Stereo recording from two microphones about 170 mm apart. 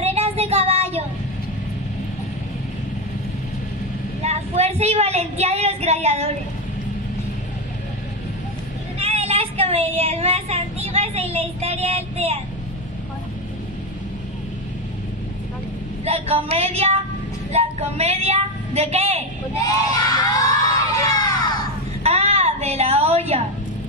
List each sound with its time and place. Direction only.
0.0 s child singing: 35° right (ahead or behind)
4.2 s speech: 40° right (ahead or behind)
9.0 s speech: 35° right (ahead or behind)
16.1 s a woman's voice: 35° right (ahead or behind)
19.5 s crowd: 20° left (ahead or behind)
22.0 s a sound: 35° right (ahead or behind)